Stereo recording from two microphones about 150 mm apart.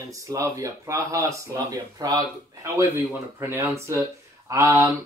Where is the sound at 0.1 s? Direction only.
20° right (ahead or behind).